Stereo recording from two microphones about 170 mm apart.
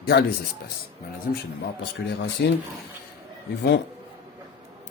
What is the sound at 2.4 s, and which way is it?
Speech, 90° left.